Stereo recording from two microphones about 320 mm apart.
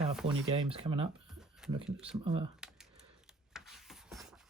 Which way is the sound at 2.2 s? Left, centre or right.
Centre.